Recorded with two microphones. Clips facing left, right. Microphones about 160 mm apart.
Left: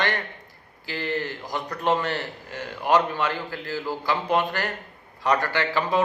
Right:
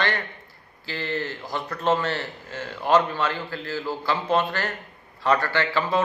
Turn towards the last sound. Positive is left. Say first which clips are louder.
# even
turn(degrees=15)  # may be behind; listen again after turning